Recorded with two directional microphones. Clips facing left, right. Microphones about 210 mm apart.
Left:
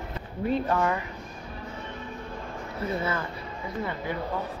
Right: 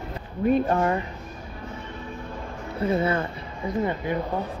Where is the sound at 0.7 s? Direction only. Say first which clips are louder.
Right 3 dB; 30° right (ahead or behind).